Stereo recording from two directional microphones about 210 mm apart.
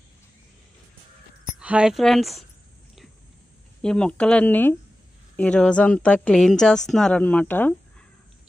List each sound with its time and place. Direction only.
1.6 s a woman's voice: 5° right (ahead or behind)
3.8 s a woman's voice: 5° left (ahead or behind)